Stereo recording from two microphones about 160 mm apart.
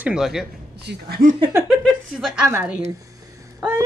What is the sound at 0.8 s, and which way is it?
Speech, 85° right.